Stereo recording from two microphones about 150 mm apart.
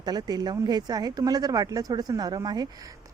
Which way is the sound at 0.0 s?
25° right (ahead or behind).